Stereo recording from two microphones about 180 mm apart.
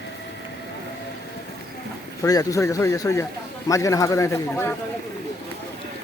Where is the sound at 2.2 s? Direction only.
20° left (ahead or behind).